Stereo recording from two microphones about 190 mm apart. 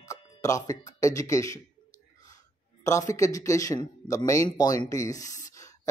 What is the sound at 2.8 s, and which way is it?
Speech, 15° left (ahead or behind).